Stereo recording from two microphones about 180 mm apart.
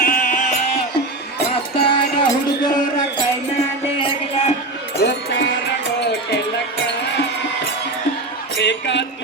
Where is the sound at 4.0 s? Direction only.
30° left (ahead or behind).